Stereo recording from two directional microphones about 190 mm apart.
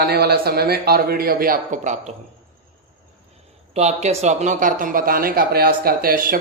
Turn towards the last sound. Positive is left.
turn(degrees=-50)  # may be behind; listen again after turning